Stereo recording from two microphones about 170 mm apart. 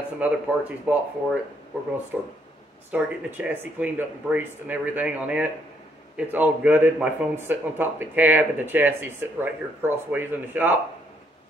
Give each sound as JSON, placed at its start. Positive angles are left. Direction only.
{"t": 0.2, "sound": "speech", "side_deg": -10}
{"t": 2.9, "sound": "speech", "side_deg": -10}